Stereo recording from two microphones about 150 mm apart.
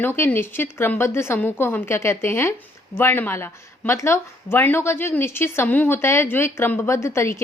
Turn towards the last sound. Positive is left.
turn(degrees=20)  # may be behind; listen again after turning